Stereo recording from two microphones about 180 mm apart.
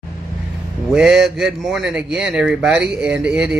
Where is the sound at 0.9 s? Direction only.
5° right (ahead or behind).